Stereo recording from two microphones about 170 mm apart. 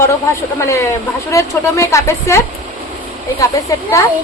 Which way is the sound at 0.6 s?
15° left (ahead or behind).